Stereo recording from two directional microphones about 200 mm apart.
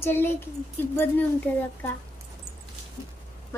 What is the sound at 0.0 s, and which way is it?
Speech, 10° left (ahead or behind).